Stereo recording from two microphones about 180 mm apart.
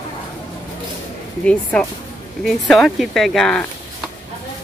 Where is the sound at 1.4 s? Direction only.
5° left (ahead or behind).